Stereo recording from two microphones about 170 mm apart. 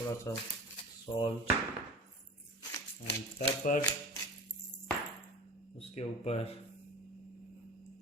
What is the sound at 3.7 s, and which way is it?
Speech, 50° left (ahead or behind).